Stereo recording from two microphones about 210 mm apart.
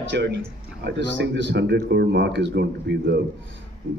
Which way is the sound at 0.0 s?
55° right (ahead or behind).